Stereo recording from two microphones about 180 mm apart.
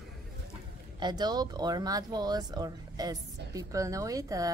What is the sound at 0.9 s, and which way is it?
Speech, 25° right (ahead or behind).